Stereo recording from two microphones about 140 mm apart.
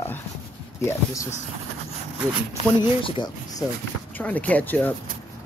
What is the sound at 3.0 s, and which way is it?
Speech, 30° left (ahead or behind).